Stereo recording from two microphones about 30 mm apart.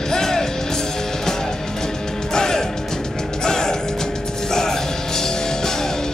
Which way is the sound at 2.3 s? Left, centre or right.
Left.